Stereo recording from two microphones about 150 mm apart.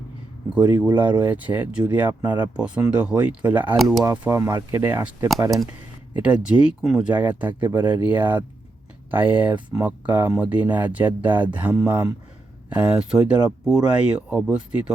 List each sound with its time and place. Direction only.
0.5 s speech: 10° right (ahead or behind)